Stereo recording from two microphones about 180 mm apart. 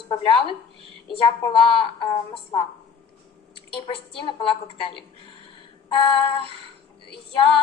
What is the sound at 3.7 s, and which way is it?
A woman's voice, 30° left (ahead or behind).